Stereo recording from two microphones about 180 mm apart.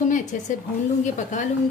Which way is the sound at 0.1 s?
45° left (ahead or behind).